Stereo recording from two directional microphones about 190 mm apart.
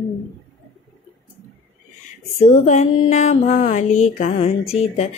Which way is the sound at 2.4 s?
40° left (ahead or behind).